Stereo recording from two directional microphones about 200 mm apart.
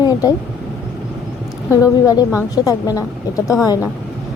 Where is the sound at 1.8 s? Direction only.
20° left (ahead or behind).